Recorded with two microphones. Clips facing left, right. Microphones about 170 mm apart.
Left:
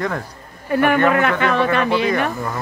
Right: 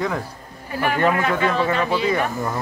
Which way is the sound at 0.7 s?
60° left (ahead or behind).